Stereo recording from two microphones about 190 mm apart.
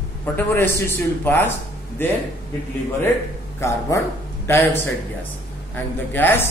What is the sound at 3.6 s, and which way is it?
A woman's voice, 15° left (ahead or behind).